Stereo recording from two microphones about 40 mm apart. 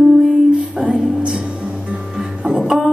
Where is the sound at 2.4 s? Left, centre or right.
Centre.